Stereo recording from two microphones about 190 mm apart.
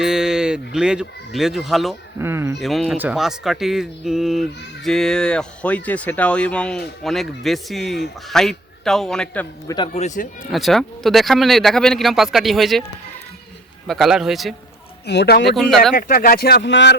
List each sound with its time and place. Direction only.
0.0 s speech: 5° right (ahead or behind)
2.1 s speech: 15° right (ahead or behind)
2.6 s speech: centre (ahead or behind)
9.6 s speech: 25° left (ahead or behind)
10.4 s speech: centre (ahead or behind)
13.8 s speech: centre (ahead or behind)
15.0 s speech: 65° left (ahead or behind)
15.5 s speech: centre (ahead or behind)
16.0 s speech: 50° left (ahead or behind); by 16.9 s 65° left (ahead or behind)